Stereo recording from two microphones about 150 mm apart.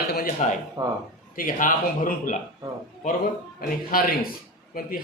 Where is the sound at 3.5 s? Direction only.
75° left (ahead or behind).